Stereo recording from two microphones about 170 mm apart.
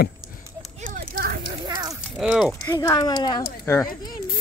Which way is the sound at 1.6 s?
25° right (ahead or behind).